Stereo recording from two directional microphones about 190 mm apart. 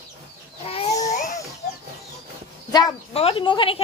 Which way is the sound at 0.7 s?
30° left (ahead or behind).